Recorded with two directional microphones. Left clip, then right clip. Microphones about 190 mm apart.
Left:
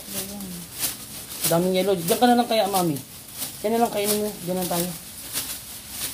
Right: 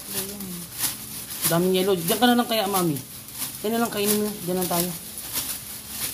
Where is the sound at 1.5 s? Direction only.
15° right (ahead or behind).